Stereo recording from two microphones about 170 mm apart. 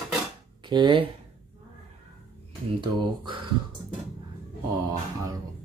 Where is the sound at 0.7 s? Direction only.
30° right (ahead or behind).